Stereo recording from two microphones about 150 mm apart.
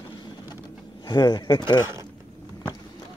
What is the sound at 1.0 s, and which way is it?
Speech, 30° left (ahead or behind).